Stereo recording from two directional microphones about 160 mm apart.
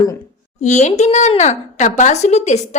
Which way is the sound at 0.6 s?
45° left (ahead or behind).